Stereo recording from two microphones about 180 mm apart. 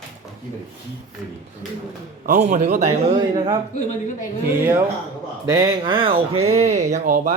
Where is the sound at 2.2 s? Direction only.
45° right (ahead or behind).